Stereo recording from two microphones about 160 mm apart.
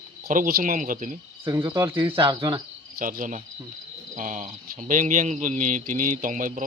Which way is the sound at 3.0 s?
55° right (ahead or behind).